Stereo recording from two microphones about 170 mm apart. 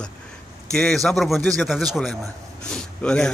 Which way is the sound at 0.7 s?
5° left (ahead or behind).